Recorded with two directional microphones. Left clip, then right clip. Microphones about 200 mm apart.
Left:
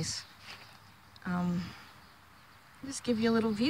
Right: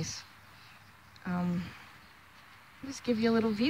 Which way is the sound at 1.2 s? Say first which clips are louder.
Even; 5° right (ahead or behind).